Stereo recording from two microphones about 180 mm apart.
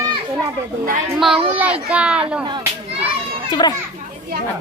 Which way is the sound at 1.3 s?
30° right (ahead or behind).